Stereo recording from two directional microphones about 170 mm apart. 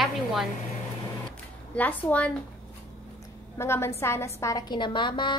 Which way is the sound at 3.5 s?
15° left (ahead or behind).